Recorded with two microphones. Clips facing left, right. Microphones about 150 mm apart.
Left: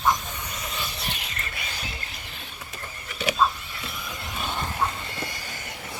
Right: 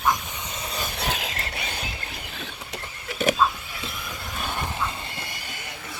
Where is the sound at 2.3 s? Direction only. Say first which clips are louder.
Right 4 dB; 90° right.